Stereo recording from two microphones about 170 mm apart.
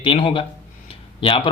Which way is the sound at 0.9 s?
30° left (ahead or behind).